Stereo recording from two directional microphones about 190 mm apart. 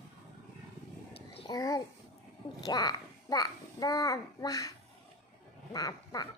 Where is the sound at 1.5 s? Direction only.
20° left (ahead or behind).